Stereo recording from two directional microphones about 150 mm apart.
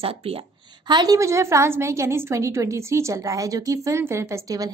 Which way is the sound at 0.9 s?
25° right (ahead or behind).